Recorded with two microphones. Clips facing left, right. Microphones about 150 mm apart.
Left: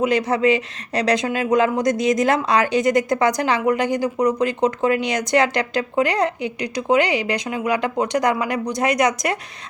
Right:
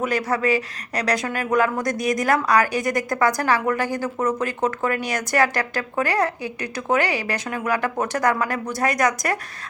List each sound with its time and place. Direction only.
0.0 s speech: 20° left (ahead or behind)